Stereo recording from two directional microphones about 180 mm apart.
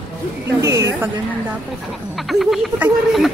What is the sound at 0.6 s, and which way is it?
Speech, 15° right (ahead or behind).